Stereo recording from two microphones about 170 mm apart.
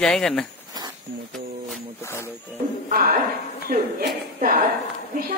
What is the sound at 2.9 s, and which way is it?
Speech, 55° right (ahead or behind).